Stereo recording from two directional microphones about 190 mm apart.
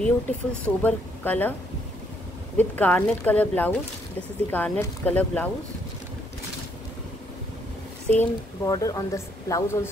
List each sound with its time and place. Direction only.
0.0 s speech: 5° left (ahead or behind)
2.5 s speech: 10° left (ahead or behind)
8.2 s speech: 20° left (ahead or behind)